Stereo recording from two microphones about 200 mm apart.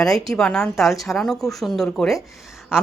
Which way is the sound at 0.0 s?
Centre (ahead or behind).